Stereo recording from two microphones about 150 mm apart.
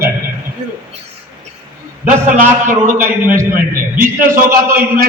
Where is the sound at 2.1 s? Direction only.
55° right (ahead or behind).